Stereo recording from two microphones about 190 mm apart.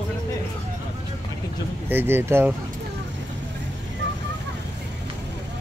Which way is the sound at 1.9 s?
10° right (ahead or behind).